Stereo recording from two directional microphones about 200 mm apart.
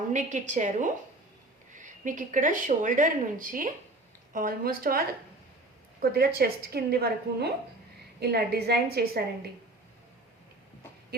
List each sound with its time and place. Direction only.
0.1 s a woman's voice: 35° right (ahead or behind)